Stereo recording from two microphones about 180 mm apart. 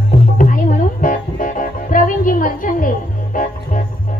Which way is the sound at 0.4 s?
50° left (ahead or behind).